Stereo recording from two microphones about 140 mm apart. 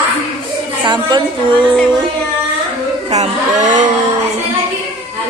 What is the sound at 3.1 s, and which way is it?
Speech, 55° right (ahead or behind).